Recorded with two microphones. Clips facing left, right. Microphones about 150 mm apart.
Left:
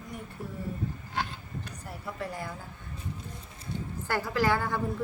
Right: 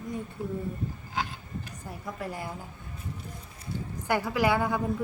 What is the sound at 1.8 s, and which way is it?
Speech, 15° right (ahead or behind).